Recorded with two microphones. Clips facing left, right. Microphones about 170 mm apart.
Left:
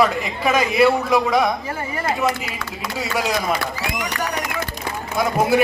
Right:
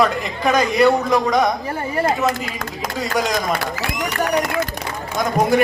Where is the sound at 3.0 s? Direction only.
5° left (ahead or behind).